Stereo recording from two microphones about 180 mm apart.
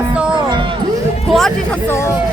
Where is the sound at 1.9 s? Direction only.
15° left (ahead or behind).